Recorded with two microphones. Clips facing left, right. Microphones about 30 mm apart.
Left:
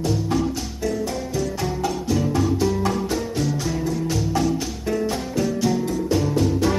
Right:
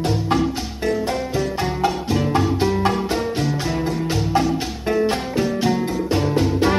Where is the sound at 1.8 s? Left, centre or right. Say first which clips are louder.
Right 2 dB; right.